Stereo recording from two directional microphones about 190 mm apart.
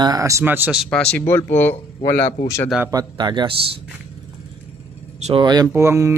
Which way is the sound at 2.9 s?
20° right (ahead or behind).